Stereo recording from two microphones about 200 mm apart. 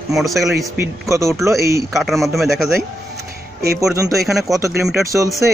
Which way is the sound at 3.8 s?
15° right (ahead or behind).